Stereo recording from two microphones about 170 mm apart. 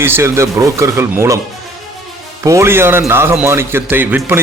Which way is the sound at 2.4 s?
15° right (ahead or behind).